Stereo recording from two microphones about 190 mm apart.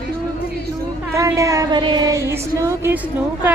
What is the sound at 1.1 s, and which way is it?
Speech, 15° right (ahead or behind).